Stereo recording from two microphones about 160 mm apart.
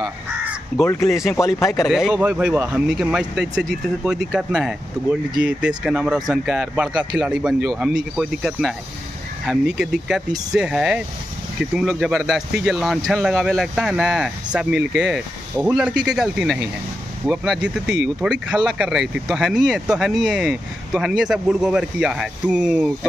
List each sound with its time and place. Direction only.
0.0 s crow: centre (ahead or behind)
0.8 s speech: 20° left (ahead or behind)
1.4 s speech: 5° right (ahead or behind)